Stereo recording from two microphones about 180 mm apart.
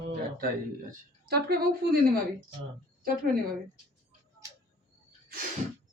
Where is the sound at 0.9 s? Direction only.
60° right (ahead or behind).